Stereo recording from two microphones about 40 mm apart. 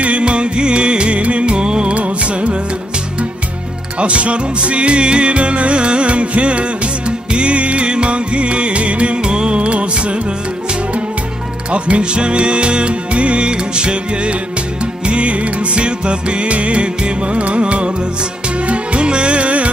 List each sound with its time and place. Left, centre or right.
0.0 s music: right
4.0 s music: right
11.7 s music: right